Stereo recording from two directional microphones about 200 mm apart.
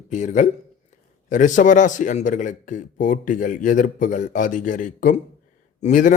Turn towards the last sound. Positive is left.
turn(degrees=40)  # may be behind; listen again after turning